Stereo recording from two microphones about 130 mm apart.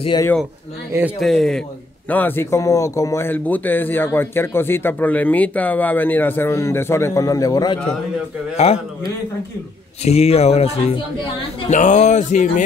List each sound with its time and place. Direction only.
1.2 s a man's voice: centre (ahead or behind)
2.0 s speech: 15° left (ahead or behind); by 7.8 s 30° left (ahead or behind)
10.0 s speech: 55° left (ahead or behind)
11.7 s speech: 65° left (ahead or behind)